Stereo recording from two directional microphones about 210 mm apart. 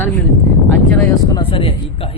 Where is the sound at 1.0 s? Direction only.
25° left (ahead or behind).